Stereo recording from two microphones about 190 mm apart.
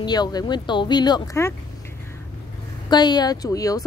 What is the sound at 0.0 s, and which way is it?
Speech, 20° left (ahead or behind).